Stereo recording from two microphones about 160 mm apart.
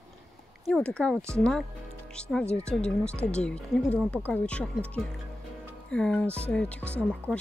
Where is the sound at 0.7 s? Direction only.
5° left (ahead or behind).